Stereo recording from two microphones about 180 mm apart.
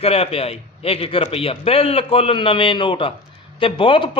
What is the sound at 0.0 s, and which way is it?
A man's voice, 35° left (ahead or behind).